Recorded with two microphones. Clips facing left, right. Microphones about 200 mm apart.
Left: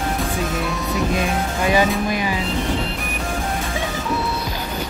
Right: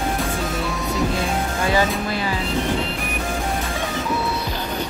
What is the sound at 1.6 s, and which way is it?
Music, 15° left (ahead or behind).